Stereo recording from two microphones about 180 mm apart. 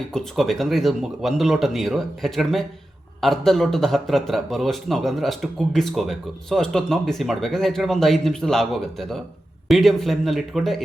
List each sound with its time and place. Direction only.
0.1 s a man's voice: centre (ahead or behind)